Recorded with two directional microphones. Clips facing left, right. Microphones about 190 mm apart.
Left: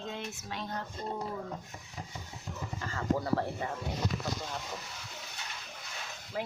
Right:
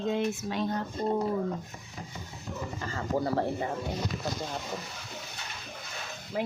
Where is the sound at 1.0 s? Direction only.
50° right (ahead or behind).